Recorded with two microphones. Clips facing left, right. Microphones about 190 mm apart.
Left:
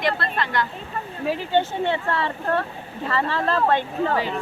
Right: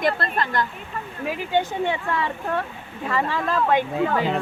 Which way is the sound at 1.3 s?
10° right (ahead or behind).